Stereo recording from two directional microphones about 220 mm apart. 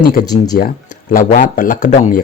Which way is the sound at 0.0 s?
40° left (ahead or behind).